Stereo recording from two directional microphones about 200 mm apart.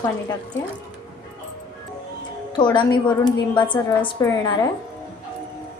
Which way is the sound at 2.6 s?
20° left (ahead or behind).